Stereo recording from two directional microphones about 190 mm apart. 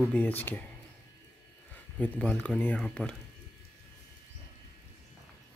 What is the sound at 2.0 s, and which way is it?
A man's voice, 5° left (ahead or behind).